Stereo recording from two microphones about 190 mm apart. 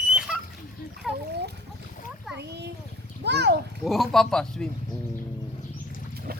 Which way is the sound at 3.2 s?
60° right (ahead or behind).